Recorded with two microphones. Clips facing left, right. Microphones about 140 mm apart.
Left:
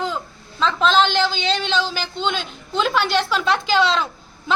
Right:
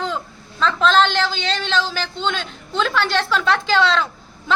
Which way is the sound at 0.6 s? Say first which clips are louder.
Right 1 dB; centre (ahead or behind).